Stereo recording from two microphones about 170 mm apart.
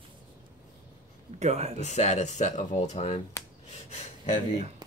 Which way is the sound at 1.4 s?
40° right (ahead or behind).